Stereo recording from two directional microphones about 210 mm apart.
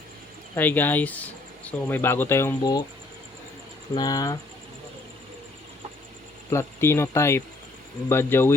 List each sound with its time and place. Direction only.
0.5 s speech: 10° left (ahead or behind)
3.9 s speech: 20° left (ahead or behind)
6.5 s speech: 10° left (ahead or behind)